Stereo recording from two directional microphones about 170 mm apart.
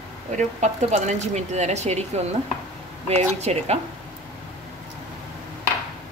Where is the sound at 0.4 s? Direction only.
45° right (ahead or behind).